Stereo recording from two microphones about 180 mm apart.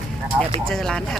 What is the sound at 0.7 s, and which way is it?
Speech, 5° left (ahead or behind).